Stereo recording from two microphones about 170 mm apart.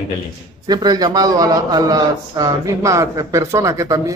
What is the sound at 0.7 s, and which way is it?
A man's voice, 25° right (ahead or behind).